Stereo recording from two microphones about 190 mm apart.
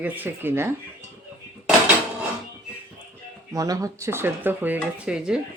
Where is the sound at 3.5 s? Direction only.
20° right (ahead or behind).